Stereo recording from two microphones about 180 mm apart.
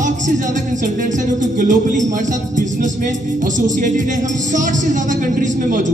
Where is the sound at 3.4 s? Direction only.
45° right (ahead or behind).